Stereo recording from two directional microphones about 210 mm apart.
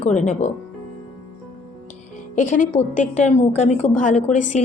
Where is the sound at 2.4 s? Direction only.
40° left (ahead or behind).